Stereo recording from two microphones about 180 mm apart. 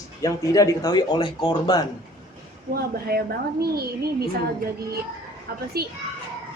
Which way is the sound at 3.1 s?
55° right (ahead or behind).